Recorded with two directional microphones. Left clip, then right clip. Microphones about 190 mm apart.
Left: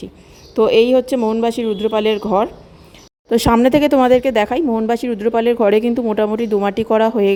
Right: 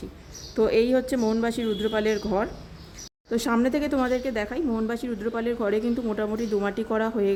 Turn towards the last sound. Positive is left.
turn(degrees=40)  # may be behind; listen again after turning